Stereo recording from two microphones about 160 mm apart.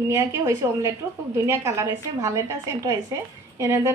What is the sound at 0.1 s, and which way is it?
A woman's voice, 15° right (ahead or behind).